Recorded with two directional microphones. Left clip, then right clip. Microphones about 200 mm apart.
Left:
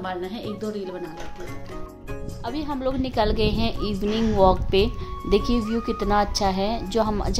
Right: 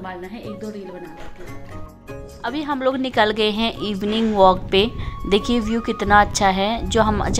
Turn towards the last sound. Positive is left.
turn(degrees=-10)  # may be behind; listen again after turning